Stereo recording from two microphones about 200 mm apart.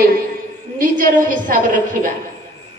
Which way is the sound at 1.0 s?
40° right (ahead or behind).